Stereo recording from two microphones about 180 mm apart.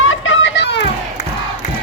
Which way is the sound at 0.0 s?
90° left.